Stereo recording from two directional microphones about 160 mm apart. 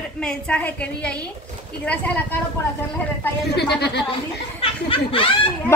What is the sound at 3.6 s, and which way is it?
Speech, 90° left.